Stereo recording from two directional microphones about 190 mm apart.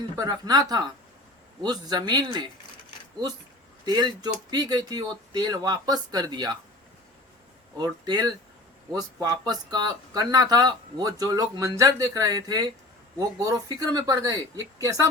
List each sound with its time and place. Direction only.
0.2 s speech: 20° right (ahead or behind)
3.8 s speech: 20° right (ahead or behind)
7.8 s speech: 20° right (ahead or behind)